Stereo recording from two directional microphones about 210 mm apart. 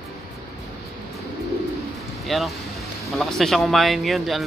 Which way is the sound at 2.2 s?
Centre (ahead or behind).